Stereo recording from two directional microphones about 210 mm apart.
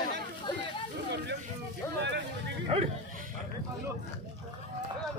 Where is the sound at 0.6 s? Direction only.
55° right (ahead or behind).